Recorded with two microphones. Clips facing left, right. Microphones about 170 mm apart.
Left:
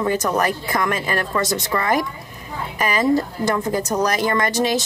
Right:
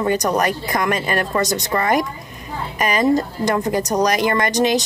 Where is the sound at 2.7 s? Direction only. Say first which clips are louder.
Right 1 dB; 20° right (ahead or behind).